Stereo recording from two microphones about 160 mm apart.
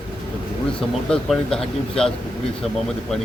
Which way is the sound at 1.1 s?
5° left (ahead or behind).